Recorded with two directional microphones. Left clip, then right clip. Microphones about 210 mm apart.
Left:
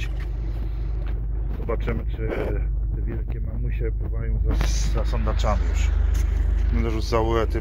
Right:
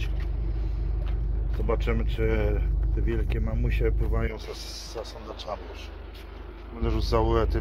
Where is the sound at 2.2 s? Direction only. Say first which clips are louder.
Right 1 dB; 15° right (ahead or behind).